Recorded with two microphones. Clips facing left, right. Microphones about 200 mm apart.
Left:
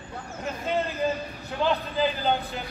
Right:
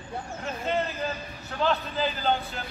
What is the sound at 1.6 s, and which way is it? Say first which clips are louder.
Speech: left 2 dB; 15° left (ahead or behind).